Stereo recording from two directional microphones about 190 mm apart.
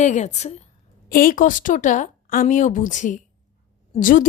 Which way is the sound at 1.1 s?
45° left (ahead or behind).